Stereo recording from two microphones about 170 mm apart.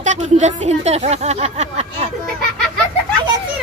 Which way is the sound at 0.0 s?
45° right (ahead or behind).